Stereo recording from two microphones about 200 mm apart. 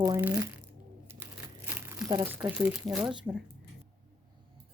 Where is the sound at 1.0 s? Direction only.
10° right (ahead or behind).